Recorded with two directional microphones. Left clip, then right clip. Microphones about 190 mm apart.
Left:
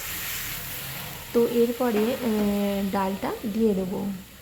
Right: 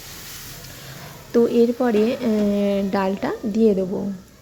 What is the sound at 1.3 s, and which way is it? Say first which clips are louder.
A woman's voice: right 5 dB; 15° right (ahead or behind).